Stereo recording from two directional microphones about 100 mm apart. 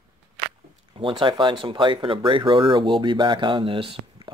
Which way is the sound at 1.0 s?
55° right (ahead or behind).